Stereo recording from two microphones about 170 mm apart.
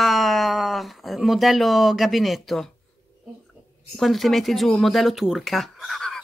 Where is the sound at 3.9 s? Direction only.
Centre (ahead or behind).